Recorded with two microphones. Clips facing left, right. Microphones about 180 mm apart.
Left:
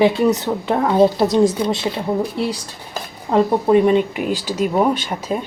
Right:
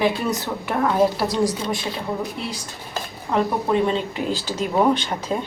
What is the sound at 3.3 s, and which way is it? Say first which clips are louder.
Speech: left 6 dB; 15° left (ahead or behind).